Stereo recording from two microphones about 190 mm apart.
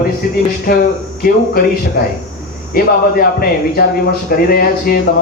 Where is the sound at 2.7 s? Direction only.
50° left (ahead or behind).